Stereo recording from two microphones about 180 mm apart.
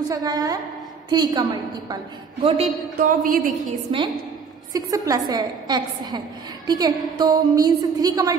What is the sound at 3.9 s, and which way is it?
A woman's voice, 30° right (ahead or behind).